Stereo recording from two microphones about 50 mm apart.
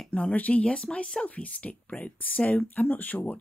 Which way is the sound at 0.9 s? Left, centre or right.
Centre.